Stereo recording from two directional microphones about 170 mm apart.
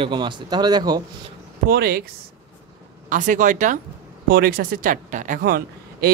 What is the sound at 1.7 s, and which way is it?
Speech, 60° right (ahead or behind).